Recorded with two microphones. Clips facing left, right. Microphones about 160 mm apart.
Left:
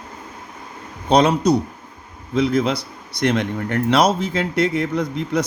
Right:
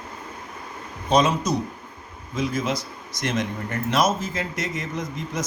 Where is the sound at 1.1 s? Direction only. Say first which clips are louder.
Left 5 dB; 65° left (ahead or behind).